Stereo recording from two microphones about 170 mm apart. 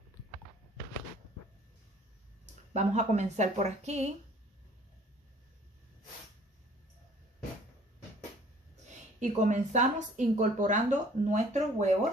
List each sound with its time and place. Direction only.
2.7 s a woman's voice: 45° right (ahead or behind)
9.2 s a woman's voice: 45° right (ahead or behind)